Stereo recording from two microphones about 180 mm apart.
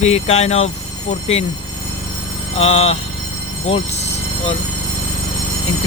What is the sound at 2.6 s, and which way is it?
Speech, 35° left (ahead or behind).